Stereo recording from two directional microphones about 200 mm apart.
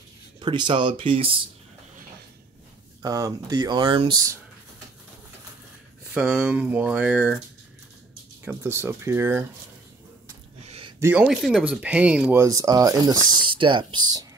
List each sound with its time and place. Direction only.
0.4 s speech: 25° right (ahead or behind)
3.0 s speech: 15° right (ahead or behind)
6.1 s speech: 5° right (ahead or behind)
8.5 s speech: 10° right (ahead or behind)
10.6 s a sound: 30° right (ahead or behind)
11.0 s speech: 10° right (ahead or behind)